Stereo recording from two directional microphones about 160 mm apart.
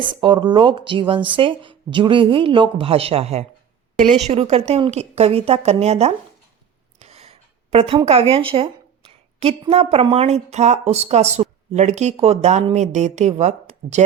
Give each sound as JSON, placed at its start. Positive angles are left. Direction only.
{"t": 0.0, "sound": "speech", "side_deg": -30}
{"t": 7.0, "sound": "a sound", "side_deg": -40}
{"t": 9.4, "sound": "a woman's voice", "side_deg": -40}